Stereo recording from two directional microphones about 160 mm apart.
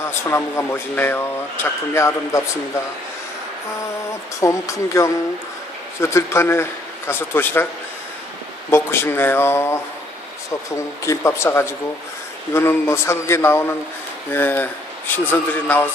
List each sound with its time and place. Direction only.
0.0 s speech: 15° left (ahead or behind)
4.4 s speech: 20° left (ahead or behind)
8.7 s speech: 15° left (ahead or behind)